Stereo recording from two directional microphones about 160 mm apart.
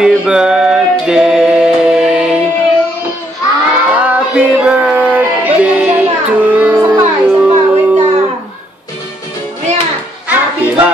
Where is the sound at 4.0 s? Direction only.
10° right (ahead or behind).